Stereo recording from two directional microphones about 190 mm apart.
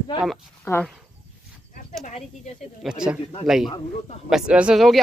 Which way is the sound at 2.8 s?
5° right (ahead or behind).